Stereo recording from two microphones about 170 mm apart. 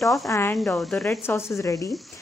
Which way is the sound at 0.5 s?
Centre (ahead or behind).